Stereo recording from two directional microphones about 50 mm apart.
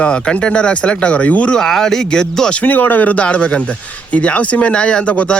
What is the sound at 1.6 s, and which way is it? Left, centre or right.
Speech, centre.